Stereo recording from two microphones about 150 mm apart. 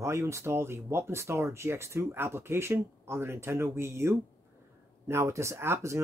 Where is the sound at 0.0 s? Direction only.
20° right (ahead or behind).